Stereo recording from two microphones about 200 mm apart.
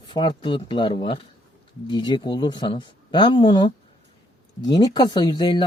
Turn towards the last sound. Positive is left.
turn(degrees=20)  # may be behind; listen again after turning